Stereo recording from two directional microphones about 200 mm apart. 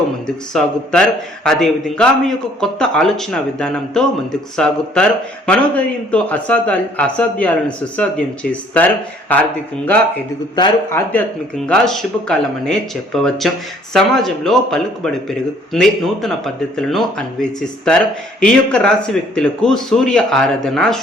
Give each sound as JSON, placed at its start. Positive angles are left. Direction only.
{"t": 0.5, "sound": "a man's voice", "side_deg": 5}
{"t": 9.3, "sound": "a man's voice", "side_deg": 10}
{"t": 10.5, "sound": "speech", "side_deg": 20}
{"t": 11.1, "sound": "a man's voice", "side_deg": 5}